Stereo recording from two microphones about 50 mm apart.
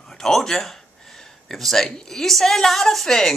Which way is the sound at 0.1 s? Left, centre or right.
Centre.